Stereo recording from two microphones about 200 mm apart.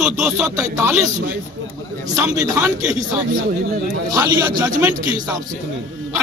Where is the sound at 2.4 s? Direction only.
5° right (ahead or behind).